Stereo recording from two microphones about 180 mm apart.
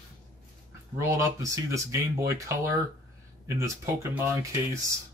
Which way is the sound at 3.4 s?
15° right (ahead or behind).